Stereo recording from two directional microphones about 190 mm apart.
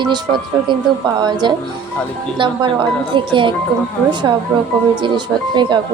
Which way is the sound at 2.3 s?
25° right (ahead or behind).